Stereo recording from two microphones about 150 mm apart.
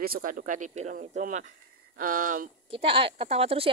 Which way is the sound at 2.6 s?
35° right (ahead or behind).